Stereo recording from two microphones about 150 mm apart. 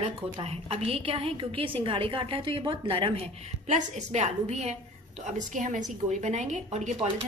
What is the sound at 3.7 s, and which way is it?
A woman's voice, 50° right (ahead or behind).